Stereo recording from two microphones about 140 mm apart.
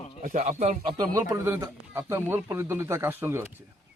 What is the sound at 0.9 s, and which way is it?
A man's voice, 30° right (ahead or behind).